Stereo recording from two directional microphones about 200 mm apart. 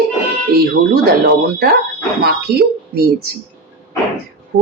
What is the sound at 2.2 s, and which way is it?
Speech, 50° right (ahead or behind).